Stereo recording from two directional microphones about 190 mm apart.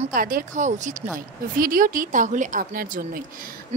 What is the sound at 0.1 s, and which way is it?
Speech, 45° right (ahead or behind).